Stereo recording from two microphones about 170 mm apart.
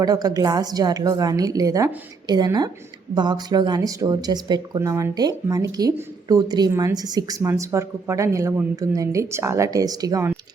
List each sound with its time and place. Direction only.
0.0 s speech: 20° right (ahead or behind)